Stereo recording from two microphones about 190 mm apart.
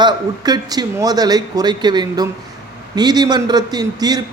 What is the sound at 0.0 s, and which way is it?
A man's voice, 20° right (ahead or behind).